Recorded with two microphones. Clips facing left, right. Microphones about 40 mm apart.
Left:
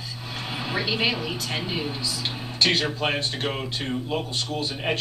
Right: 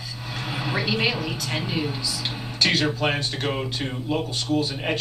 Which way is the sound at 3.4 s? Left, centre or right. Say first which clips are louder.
Right 1 dB; centre.